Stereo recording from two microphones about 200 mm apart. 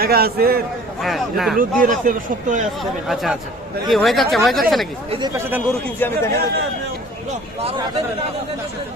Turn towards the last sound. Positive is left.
turn(degrees=-30)  # may be behind; listen again after turning